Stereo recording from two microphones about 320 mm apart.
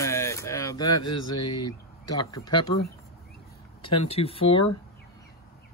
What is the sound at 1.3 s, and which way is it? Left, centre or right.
Speech, left.